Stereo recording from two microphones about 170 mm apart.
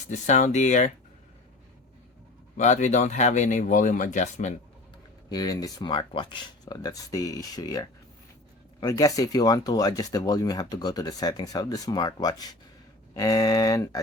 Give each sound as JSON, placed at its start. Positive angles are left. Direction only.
{"t": 0.0, "sound": "speech", "side_deg": 45}
{"t": 2.6, "sound": "speech", "side_deg": 45}
{"t": 5.3, "sound": "speech", "side_deg": 25}